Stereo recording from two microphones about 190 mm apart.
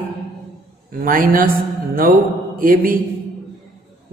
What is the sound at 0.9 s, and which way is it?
A man's voice, 50° right (ahead or behind).